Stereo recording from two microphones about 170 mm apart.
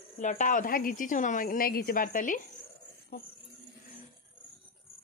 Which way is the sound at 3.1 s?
60° left (ahead or behind).